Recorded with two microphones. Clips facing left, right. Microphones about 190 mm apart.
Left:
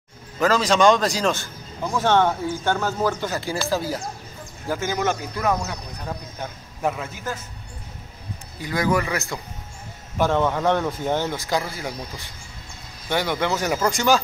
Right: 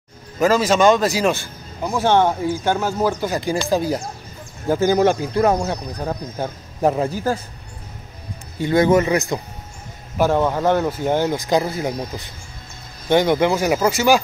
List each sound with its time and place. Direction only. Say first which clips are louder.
0.4 s a man's voice: right 3 dB; 10° right (ahead or behind)
4.6 s speech: right 8 dB; 35° right (ahead or behind)
8.5 s a man's voice: right 7 dB; 25° right (ahead or behind)
10.1 s a man's voice: right 3 dB; 10° right (ahead or behind)
13.1 s a man's voice: right 7 dB; 20° right (ahead or behind)